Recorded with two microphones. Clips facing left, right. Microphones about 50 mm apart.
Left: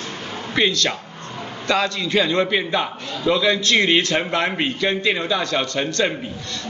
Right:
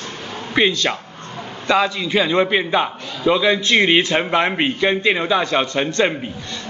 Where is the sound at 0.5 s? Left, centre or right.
Centre.